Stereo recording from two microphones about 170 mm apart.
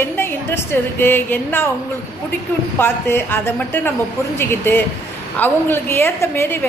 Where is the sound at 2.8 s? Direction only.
10° left (ahead or behind).